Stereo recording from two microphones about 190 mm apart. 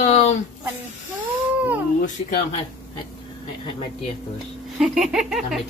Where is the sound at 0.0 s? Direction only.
35° left (ahead or behind).